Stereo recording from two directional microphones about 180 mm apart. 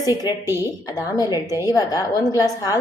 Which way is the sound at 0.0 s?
20° left (ahead or behind).